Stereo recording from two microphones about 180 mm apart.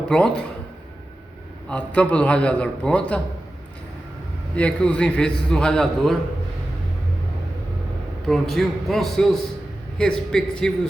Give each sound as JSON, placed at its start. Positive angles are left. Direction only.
{"t": 0.1, "sound": "a man's voice", "side_deg": 5}
{"t": 1.7, "sound": "a man's voice", "side_deg": 5}
{"t": 4.5, "sound": "a man's voice", "side_deg": 5}
{"t": 8.3, "sound": "a man's voice", "side_deg": 0}